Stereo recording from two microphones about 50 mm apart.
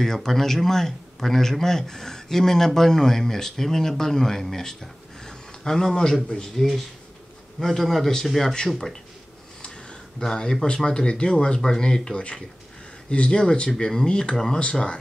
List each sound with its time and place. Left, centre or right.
0.0 s a man's voice: centre
5.2 s a sound: centre
6.2 s a man's voice: centre
9.6 s a man's voice: centre
14.6 s speech: centre